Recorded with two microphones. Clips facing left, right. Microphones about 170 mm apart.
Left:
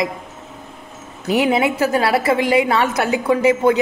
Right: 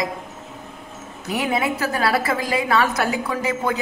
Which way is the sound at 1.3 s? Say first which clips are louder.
Left 6 dB; 25° left (ahead or behind).